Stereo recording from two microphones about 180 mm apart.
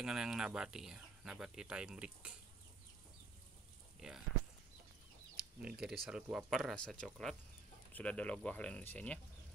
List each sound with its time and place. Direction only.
0.0 s speech: 5° right (ahead or behind)
5.3 s speech: 5° right (ahead or behind)